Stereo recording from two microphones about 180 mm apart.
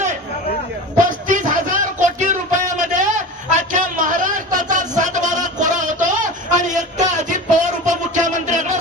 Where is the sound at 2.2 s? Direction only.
45° right (ahead or behind).